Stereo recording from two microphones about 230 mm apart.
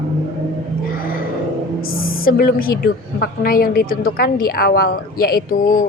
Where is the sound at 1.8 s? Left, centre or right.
Left.